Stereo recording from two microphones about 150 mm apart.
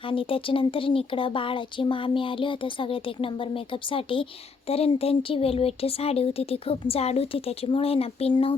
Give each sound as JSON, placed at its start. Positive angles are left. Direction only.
{"t": 0.0, "sound": "speech", "side_deg": 35}